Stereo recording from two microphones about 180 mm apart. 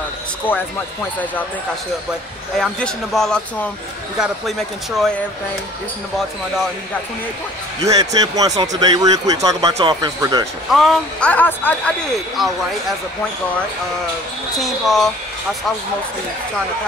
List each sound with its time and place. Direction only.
0.5 s speech: 10° left (ahead or behind)
2.5 s speech: centre (ahead or behind)
7.8 s speech: 20° right (ahead or behind)
10.7 s speech: centre (ahead or behind)
14.6 s speech: centre (ahead or behind)